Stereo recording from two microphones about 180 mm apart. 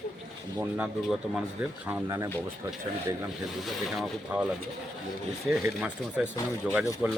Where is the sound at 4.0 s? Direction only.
5° right (ahead or behind).